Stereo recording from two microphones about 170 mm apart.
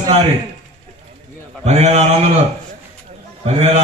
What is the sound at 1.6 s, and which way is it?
A man's voice, 40° right (ahead or behind).